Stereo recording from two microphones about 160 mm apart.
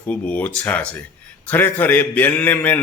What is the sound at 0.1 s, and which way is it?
A man's voice, 10° left (ahead or behind).